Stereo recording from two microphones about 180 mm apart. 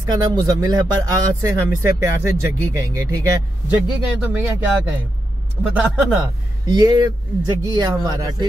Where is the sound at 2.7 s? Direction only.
20° right (ahead or behind).